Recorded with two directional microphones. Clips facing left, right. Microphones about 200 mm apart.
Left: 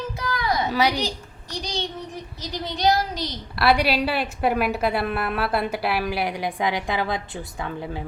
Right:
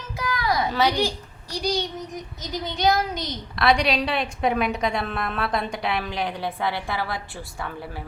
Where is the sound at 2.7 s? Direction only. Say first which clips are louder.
Left 1 dB; 35° left (ahead or behind).